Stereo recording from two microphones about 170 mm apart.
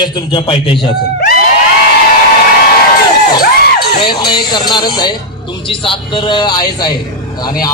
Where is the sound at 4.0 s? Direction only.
25° left (ahead or behind).